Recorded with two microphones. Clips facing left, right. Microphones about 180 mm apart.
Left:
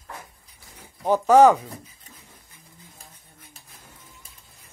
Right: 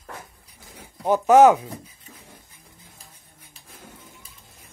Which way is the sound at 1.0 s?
Centre (ahead or behind).